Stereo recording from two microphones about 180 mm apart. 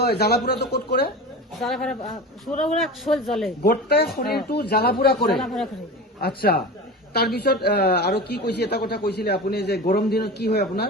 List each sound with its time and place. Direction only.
0.0 s a man's voice: 65° left (ahead or behind)
1.6 s speech: centre (ahead or behind)
3.6 s a man's voice: 60° left (ahead or behind)
5.3 s speech: centre (ahead or behind)
6.1 s a man's voice: 60° left (ahead or behind)